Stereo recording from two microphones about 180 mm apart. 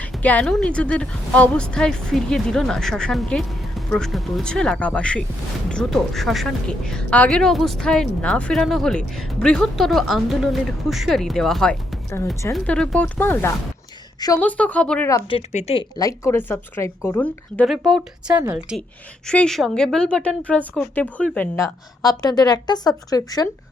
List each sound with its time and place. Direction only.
0.0 s a woman's voice: 10° left (ahead or behind)
15.3 s a woman's voice: 35° left (ahead or behind); by 18.8 s 10° right (ahead or behind)
19.3 s a woman's voice: 5° left (ahead or behind); by 23.5 s 20° left (ahead or behind)